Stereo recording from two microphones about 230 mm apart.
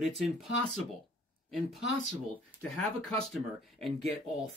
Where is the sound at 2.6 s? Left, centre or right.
Centre.